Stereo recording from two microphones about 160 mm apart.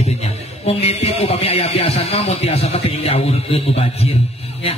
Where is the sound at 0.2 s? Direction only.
40° left (ahead or behind).